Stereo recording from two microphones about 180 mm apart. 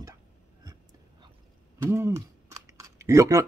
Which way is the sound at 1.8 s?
15° right (ahead or behind).